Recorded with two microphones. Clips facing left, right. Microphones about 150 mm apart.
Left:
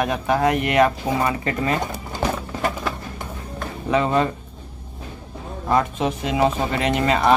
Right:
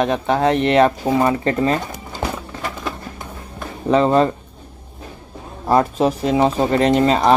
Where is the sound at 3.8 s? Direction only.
35° right (ahead or behind).